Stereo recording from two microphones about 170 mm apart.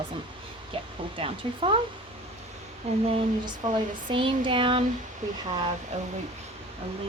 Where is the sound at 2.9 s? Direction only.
40° right (ahead or behind).